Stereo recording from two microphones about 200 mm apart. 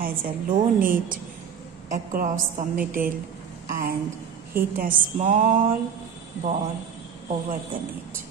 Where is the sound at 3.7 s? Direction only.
45° right (ahead or behind).